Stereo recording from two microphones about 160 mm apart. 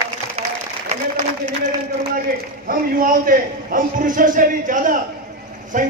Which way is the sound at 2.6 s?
60° right (ahead or behind).